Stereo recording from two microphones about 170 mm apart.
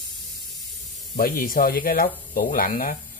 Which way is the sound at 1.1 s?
60° left (ahead or behind).